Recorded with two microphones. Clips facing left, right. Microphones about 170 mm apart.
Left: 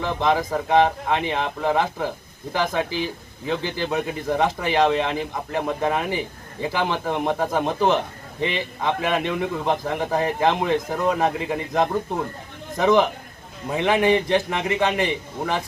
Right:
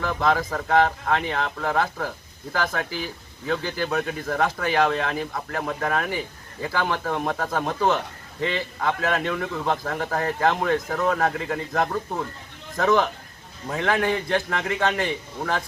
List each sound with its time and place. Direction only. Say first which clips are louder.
0.0 s speech: left 1 dB; 20° left (ahead or behind)